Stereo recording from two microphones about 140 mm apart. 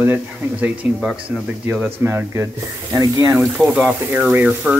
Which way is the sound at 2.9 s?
25° right (ahead or behind).